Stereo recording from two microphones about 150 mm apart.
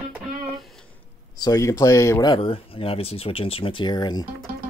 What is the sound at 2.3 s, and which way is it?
Speech, 40° left (ahead or behind).